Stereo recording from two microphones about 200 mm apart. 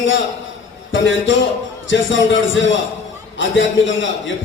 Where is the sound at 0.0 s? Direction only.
70° left (ahead or behind).